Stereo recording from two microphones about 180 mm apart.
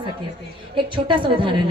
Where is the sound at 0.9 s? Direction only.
25° right (ahead or behind).